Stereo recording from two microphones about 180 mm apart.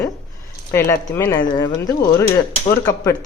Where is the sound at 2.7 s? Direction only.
15° left (ahead or behind).